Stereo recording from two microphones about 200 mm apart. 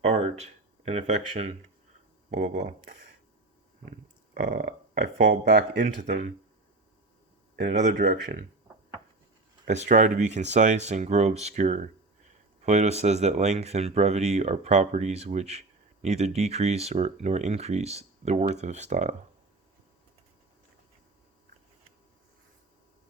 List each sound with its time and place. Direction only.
0.0 s speech: 30° right (ahead or behind)
2.6 s speech: 55° right (ahead or behind)
4.4 s speech: 40° right (ahead or behind); by 5.8 s 60° right (ahead or behind)
7.6 s speech: 40° right (ahead or behind)
7.9 s speech: 55° right (ahead or behind)
9.6 s speech: 35° right (ahead or behind)